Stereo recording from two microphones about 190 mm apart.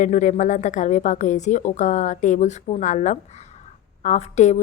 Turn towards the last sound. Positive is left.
turn(degrees=35)  # may be behind; listen again after turning